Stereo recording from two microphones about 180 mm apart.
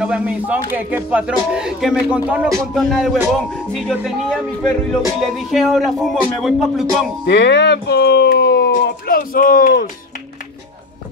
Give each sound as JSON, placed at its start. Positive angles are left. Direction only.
{"t": 0.0, "sound": "speech", "side_deg": -5}
{"t": 7.2, "sound": "speech", "side_deg": 70}